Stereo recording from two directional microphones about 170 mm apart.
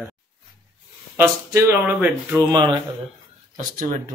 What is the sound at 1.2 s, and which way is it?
Speech, 10° right (ahead or behind).